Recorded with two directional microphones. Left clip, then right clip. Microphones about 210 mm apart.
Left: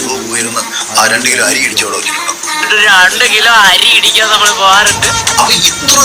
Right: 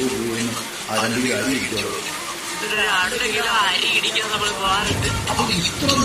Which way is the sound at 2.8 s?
45° left (ahead or behind).